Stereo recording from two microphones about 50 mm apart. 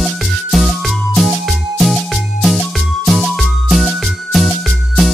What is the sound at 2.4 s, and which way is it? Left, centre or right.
Music, centre.